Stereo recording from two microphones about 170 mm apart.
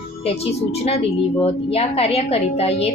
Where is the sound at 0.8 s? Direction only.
35° left (ahead or behind).